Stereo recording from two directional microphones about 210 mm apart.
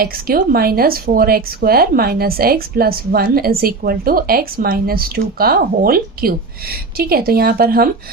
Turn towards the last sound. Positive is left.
turn(degrees=-45)  # may be behind; listen again after turning